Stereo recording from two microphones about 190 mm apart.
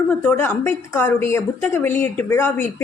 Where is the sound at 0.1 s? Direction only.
10° left (ahead or behind).